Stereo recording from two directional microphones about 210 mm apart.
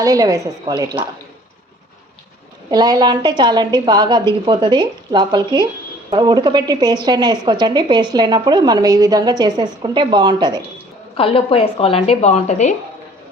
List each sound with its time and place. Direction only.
0.0 s a woman's voice: 15° right (ahead or behind)
2.6 s a woman's voice: 20° right (ahead or behind)
11.2 s speech: 25° left (ahead or behind)